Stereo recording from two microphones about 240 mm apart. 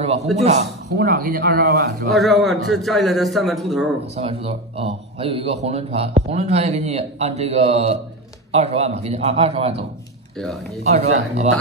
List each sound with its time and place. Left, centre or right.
0.4 s speech: right
0.9 s speech: right
2.1 s a man's voice: centre
4.2 s speech: right
10.8 s speech: right